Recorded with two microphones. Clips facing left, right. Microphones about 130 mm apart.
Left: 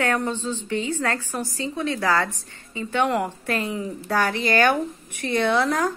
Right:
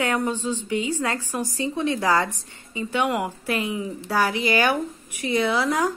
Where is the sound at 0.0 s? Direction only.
10° right (ahead or behind).